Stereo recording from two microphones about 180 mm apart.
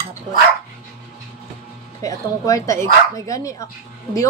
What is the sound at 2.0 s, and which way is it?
A woman's voice, 20° left (ahead or behind).